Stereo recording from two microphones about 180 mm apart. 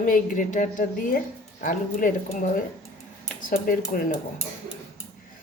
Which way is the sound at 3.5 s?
50° left (ahead or behind).